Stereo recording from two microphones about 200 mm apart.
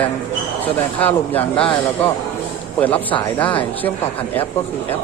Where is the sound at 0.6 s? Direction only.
10° left (ahead or behind).